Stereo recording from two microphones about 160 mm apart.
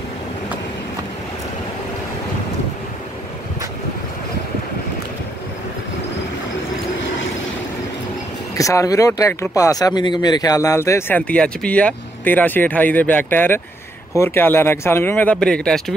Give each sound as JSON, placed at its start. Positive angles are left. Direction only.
{"t": 8.5, "sound": "speech", "side_deg": 20}